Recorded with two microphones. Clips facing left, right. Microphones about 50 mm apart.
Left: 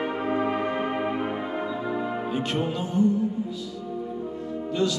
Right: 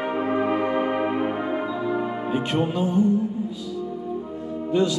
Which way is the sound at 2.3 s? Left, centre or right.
Right.